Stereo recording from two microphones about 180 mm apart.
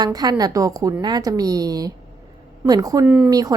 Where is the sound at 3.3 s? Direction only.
20° right (ahead or behind).